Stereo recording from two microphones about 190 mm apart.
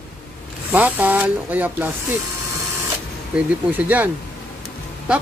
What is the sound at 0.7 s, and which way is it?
Speech, 10° right (ahead or behind).